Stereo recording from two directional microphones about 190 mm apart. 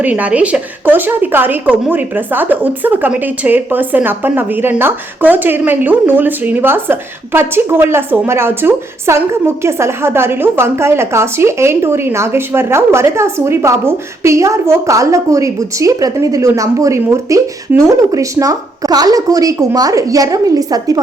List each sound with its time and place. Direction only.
0.0 s a woman's voice: 10° right (ahead or behind)